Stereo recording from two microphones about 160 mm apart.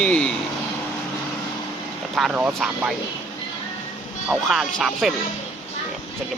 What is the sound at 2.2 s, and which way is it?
Speech, 5° right (ahead or behind).